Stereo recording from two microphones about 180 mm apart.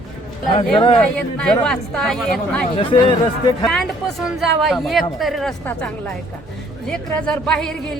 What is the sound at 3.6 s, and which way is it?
A woman's voice, centre (ahead or behind).